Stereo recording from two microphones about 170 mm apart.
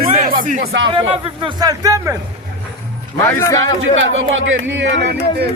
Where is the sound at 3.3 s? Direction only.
20° left (ahead or behind).